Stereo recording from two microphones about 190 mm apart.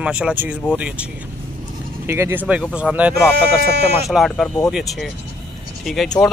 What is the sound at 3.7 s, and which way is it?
Speech, 60° right (ahead or behind).